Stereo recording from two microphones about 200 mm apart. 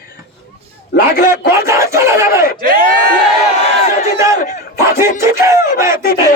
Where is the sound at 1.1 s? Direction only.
45° left (ahead or behind).